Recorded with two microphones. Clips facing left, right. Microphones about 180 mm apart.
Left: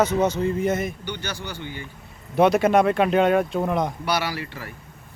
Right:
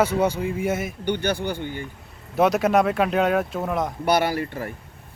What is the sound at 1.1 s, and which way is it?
Speech, 55° right (ahead or behind).